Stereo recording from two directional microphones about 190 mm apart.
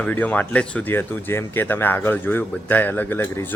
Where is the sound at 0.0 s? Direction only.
10° left (ahead or behind).